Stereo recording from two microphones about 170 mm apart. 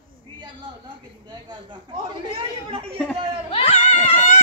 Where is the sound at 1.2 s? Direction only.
25° right (ahead or behind).